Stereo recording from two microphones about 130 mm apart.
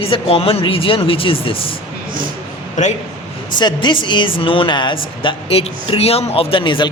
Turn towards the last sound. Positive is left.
turn(degrees=40)  # may be behind; listen again after turning